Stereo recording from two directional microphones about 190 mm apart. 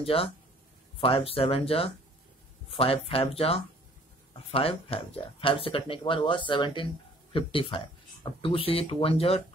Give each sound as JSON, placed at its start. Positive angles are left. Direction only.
{"t": 0.0, "sound": "speech", "side_deg": 30}